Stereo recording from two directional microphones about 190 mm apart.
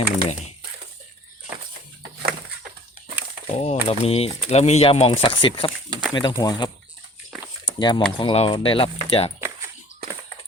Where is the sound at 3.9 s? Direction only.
30° left (ahead or behind).